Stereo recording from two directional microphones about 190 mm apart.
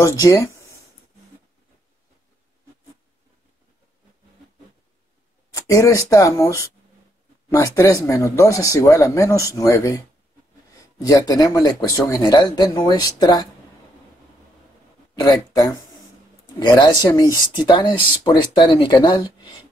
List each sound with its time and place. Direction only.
0.0 s speech: 15° left (ahead or behind)
5.5 s speech: 15° left (ahead or behind)
15.1 s speech: 20° left (ahead or behind)